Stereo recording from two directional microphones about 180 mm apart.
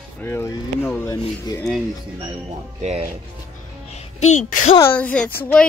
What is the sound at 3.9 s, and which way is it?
Music, 40° left (ahead or behind).